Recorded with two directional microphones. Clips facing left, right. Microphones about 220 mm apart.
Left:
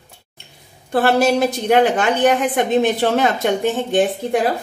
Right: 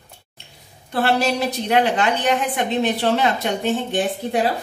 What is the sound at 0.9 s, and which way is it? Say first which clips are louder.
Speech: left 5 dB; 45° left (ahead or behind).